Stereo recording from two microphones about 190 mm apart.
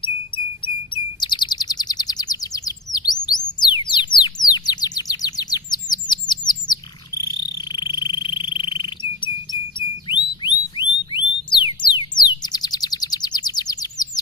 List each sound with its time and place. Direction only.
0.9 s chirp: 25° left (ahead or behind)
7.7 s frog: 25° left (ahead or behind)
8.7 s a sound: 25° left (ahead or behind)
12.4 s bird: 20° left (ahead or behind)